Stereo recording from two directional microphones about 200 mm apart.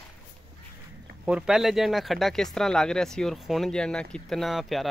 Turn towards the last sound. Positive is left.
turn(degrees=0)  # may be behind; listen again after turning